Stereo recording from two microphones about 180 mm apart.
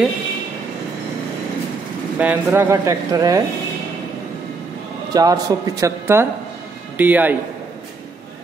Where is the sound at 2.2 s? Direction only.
10° right (ahead or behind).